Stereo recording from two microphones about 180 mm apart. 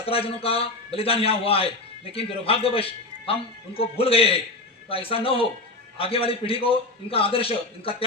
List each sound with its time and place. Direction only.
0.0 s a man's voice: 30° left (ahead or behind)